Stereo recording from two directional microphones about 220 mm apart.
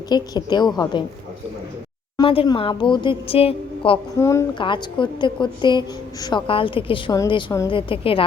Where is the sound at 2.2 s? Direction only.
25° left (ahead or behind).